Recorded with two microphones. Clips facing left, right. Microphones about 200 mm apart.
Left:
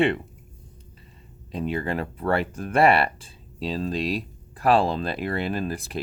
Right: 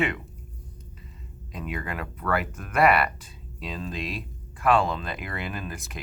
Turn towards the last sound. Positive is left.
turn(degrees=35)  # may be behind; listen again after turning